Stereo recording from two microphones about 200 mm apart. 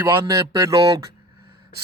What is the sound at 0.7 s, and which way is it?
Speech, 25° right (ahead or behind).